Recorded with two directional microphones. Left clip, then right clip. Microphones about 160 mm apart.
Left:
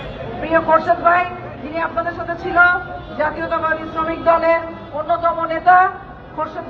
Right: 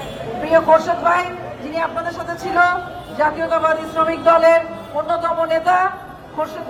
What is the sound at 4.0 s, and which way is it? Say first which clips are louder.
A woman's voice: right 3 dB; 30° right (ahead or behind).